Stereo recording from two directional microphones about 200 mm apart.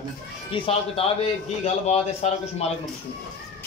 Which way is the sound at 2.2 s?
35° left (ahead or behind).